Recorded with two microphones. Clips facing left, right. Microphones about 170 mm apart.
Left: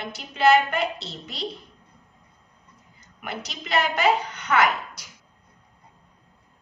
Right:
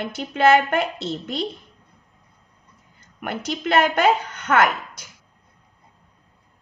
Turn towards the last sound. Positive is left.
turn(degrees=-50)  # may be behind; listen again after turning